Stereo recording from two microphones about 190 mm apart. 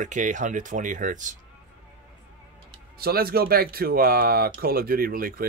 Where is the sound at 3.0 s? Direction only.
50° right (ahead or behind).